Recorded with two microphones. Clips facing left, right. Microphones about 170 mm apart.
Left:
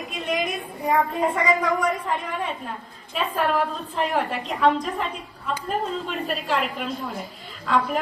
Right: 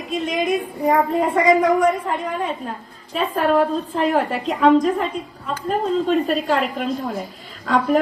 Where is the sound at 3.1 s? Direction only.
40° right (ahead or behind).